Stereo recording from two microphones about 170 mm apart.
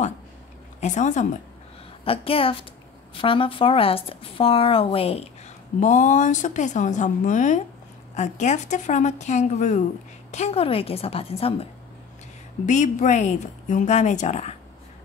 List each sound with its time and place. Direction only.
0.7 s speech: 45° left (ahead or behind)
2.0 s a woman's voice: 35° left (ahead or behind)
5.8 s a woman's voice: 45° left (ahead or behind)
12.6 s speech: 45° left (ahead or behind)